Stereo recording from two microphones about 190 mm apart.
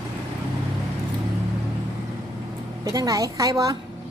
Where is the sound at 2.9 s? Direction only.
20° right (ahead or behind).